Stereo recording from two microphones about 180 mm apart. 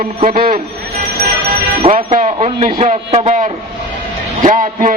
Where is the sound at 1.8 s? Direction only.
35° right (ahead or behind).